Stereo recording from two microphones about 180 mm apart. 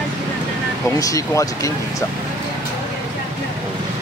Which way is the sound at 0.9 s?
20° left (ahead or behind).